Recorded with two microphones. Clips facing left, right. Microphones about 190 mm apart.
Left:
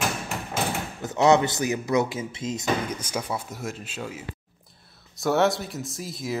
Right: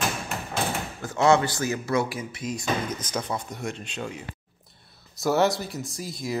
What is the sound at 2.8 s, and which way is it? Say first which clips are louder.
Speech: even; 10° left (ahead or behind).